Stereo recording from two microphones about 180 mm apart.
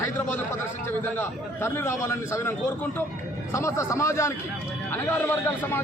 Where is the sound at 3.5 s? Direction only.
15° left (ahead or behind).